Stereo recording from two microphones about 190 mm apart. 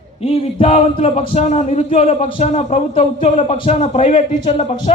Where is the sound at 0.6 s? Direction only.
30° left (ahead or behind).